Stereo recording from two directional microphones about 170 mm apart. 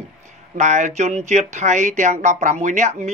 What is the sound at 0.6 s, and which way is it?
Speech, 45° right (ahead or behind).